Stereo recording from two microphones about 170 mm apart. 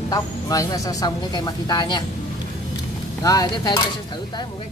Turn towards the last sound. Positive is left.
turn(degrees=20)  # may be behind; listen again after turning